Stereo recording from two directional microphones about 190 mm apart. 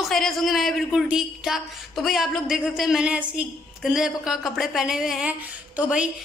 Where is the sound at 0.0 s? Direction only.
Centre (ahead or behind).